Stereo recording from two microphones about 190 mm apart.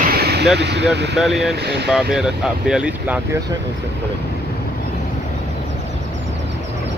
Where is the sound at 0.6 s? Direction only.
65° right (ahead or behind).